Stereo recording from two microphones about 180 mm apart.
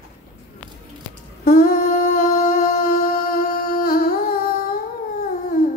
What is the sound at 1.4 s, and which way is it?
Humming, 50° left (ahead or behind).